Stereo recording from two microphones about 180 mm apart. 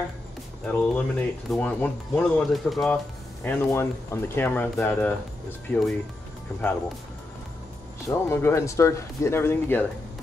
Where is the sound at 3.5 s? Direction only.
10° left (ahead or behind).